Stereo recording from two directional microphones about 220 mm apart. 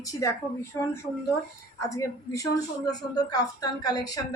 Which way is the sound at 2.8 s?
15° left (ahead or behind).